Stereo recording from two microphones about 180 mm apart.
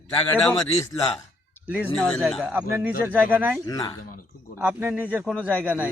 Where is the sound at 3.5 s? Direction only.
15° left (ahead or behind).